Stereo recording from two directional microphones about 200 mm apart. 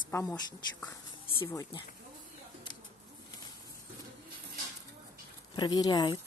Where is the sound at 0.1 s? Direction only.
15° left (ahead or behind).